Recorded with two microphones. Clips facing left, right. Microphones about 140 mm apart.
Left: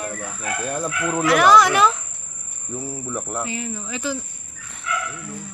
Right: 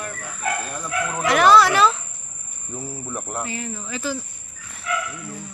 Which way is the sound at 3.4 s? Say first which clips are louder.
Left 1 dB; 15° left (ahead or behind).